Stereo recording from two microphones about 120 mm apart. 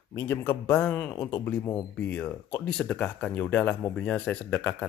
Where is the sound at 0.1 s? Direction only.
25° left (ahead or behind).